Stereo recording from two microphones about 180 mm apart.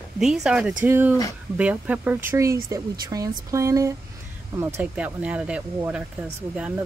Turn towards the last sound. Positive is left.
turn(degrees=-5)  # may be behind; listen again after turning